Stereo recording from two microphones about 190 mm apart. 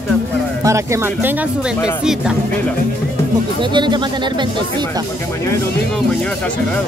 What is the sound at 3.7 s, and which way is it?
Speech, 25° right (ahead or behind).